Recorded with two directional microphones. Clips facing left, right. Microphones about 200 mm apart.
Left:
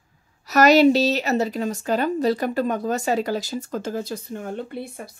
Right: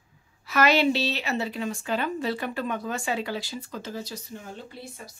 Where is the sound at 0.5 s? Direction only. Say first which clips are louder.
Left 7 dB; 40° left (ahead or behind).